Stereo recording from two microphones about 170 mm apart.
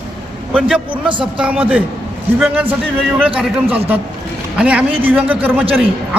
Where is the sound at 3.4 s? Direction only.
5° right (ahead or behind).